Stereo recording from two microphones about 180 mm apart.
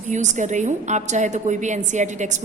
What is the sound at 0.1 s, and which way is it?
A woman's voice, 40° right (ahead or behind).